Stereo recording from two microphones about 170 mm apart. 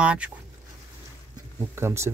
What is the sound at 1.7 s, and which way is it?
Speech, 15° right (ahead or behind).